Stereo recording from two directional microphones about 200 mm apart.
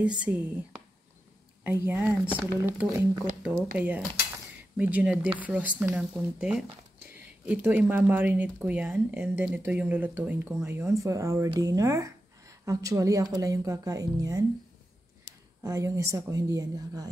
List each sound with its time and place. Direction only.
0.0 s speech: 5° right (ahead or behind)
1.6 s speech: 10° right (ahead or behind)
15.6 s speech: 15° right (ahead or behind)